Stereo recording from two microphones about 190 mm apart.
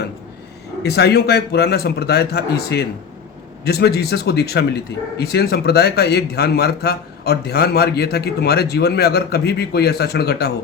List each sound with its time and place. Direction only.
0.8 s speech: 60° left (ahead or behind)